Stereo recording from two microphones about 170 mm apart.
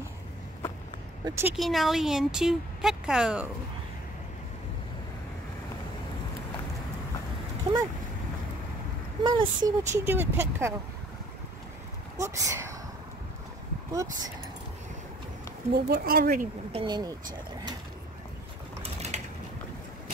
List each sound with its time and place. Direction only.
1.2 s speech: 15° right (ahead or behind)
1.6 s speech: centre (ahead or behind)
7.7 s speech: 35° right (ahead or behind)
9.2 s speech: 25° right (ahead or behind)
10.0 s speech: 15° right (ahead or behind)
12.2 s speech: 20° right (ahead or behind)
15.7 s speech: 65° right (ahead or behind)
16.7 s speech: 25° right (ahead or behind)
19.1 s mechanisms: 45° right (ahead or behind)